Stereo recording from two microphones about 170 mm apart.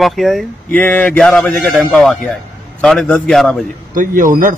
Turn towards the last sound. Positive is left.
turn(degrees=-55)  # may be behind; listen again after turning